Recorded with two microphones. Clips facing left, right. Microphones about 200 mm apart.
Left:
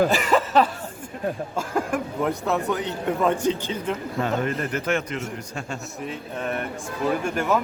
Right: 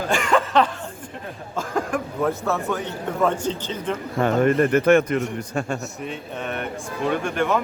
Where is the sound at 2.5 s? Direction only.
15° left (ahead or behind).